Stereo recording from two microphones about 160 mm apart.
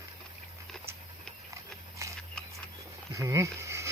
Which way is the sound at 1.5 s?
20° right (ahead or behind).